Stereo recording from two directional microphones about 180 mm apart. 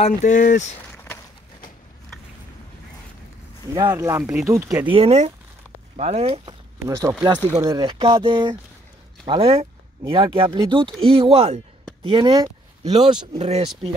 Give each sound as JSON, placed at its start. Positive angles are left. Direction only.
{"t": 0.0, "sound": "speech", "side_deg": 45}
{"t": 0.9, "sound": "a sound", "side_deg": 15}
{"t": 3.7, "sound": "speech", "side_deg": -20}
{"t": 4.2, "sound": "speech", "side_deg": -5}
{"t": 4.9, "sound": "speech", "side_deg": -35}
{"t": 6.8, "sound": "speech", "side_deg": -15}
{"t": 13.4, "sound": "speech", "side_deg": -35}